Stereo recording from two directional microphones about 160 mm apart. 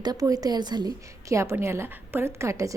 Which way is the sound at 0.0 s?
25° right (ahead or behind).